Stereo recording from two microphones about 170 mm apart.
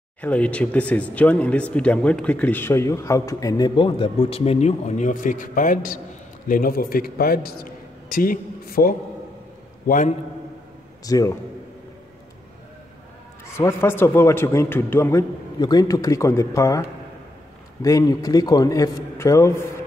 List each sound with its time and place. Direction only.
0.2 s a man's voice: 5° left (ahead or behind); by 10.1 s 50° left (ahead or behind)
11.1 s a man's voice: 20° left (ahead or behind)
13.6 s speech: 15° left (ahead or behind)
17.8 s a man's voice: 20° left (ahead or behind)